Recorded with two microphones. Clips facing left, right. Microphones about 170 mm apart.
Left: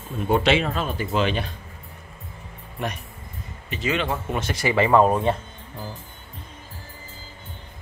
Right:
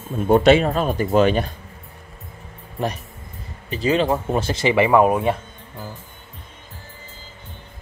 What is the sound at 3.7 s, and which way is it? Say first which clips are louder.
Speech: right 6 dB; 35° right (ahead or behind).